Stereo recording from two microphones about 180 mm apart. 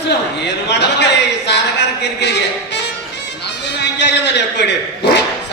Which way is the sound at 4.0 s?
70° left (ahead or behind).